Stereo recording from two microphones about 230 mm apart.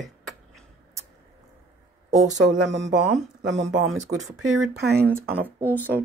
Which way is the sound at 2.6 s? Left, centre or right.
Right.